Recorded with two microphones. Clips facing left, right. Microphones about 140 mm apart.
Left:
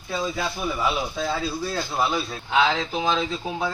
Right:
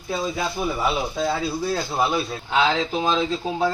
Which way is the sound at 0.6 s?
25° right (ahead or behind).